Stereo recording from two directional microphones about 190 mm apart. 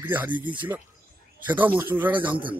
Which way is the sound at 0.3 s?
25° right (ahead or behind).